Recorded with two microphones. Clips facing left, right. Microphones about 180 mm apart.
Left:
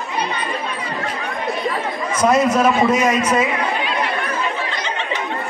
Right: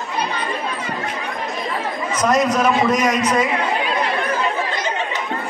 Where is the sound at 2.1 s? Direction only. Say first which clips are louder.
Left 2 dB; 10° left (ahead or behind).